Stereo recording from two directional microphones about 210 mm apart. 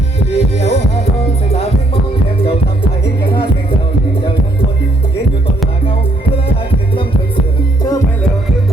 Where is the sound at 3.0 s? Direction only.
50° left (ahead or behind).